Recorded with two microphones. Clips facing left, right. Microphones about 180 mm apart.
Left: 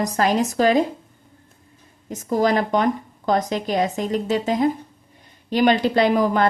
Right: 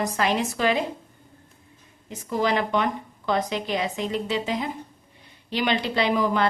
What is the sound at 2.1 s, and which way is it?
Speech, 45° left (ahead or behind).